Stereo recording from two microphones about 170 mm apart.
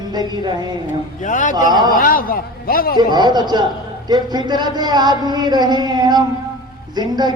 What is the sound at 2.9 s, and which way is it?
Speech, 25° right (ahead or behind).